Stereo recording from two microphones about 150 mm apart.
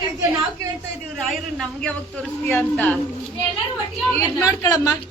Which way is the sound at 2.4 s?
10° left (ahead or behind).